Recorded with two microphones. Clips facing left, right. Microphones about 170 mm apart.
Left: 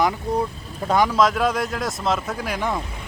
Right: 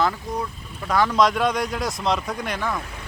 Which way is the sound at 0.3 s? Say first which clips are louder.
Left 5 dB; 30° left (ahead or behind).